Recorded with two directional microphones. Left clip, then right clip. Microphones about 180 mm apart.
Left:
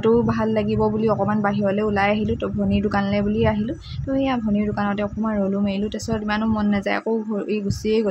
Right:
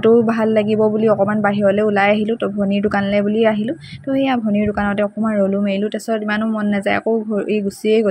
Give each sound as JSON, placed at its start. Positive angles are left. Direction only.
{"t": 0.0, "sound": "a man's voice", "side_deg": -15}